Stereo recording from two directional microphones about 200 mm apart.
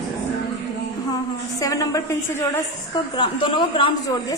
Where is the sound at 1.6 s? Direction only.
15° left (ahead or behind).